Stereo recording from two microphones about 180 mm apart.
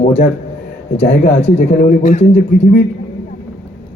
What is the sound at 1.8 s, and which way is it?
Speech, 50° left (ahead or behind).